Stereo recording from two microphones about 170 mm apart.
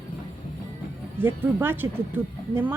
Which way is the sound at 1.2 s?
10° right (ahead or behind).